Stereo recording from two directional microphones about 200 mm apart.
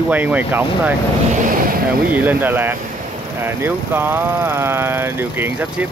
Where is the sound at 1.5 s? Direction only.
45° right (ahead or behind).